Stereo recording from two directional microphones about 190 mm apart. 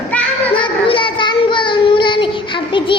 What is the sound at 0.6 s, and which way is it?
Child singing, 25° left (ahead or behind).